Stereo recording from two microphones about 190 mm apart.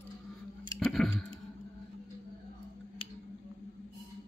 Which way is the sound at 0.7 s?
Centre (ahead or behind).